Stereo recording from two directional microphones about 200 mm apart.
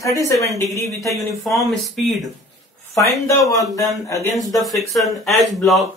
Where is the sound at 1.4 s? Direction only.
Centre (ahead or behind).